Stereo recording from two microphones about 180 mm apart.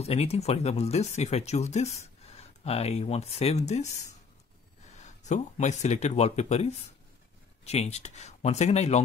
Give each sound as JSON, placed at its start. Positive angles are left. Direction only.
{"t": 0.0, "sound": "speech", "side_deg": 35}
{"t": 4.9, "sound": "speech", "side_deg": 40}